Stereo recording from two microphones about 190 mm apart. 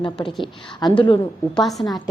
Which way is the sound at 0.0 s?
25° left (ahead or behind).